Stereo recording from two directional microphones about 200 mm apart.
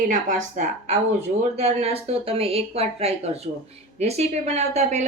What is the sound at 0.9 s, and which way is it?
A woman's voice, 35° right (ahead or behind).